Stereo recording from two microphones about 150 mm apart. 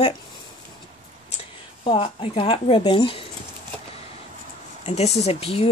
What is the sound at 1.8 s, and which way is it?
Speech, 35° left (ahead or behind).